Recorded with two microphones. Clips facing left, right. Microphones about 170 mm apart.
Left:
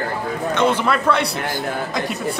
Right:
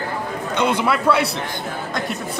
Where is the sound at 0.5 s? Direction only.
10° right (ahead or behind).